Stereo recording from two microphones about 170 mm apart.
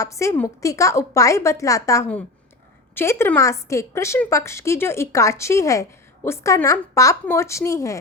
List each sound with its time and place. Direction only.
0.0 s speech: 20° left (ahead or behind)